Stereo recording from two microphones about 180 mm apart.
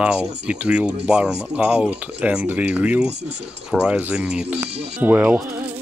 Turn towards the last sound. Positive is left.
turn(degrees=-10)  # may be behind; listen again after turning